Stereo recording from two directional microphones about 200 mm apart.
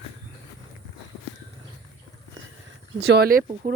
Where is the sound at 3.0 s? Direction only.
55° right (ahead or behind).